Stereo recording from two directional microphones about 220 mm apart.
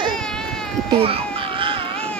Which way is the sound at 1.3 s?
25° right (ahead or behind).